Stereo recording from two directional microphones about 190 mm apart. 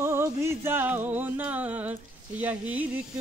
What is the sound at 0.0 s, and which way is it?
Music, 15° right (ahead or behind).